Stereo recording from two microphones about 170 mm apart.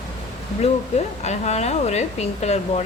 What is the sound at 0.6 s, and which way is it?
A woman's voice, 40° left (ahead or behind).